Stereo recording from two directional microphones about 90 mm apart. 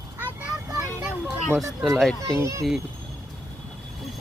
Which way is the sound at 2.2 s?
35° right (ahead or behind).